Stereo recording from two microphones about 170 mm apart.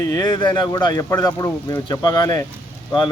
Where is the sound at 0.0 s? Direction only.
25° left (ahead or behind).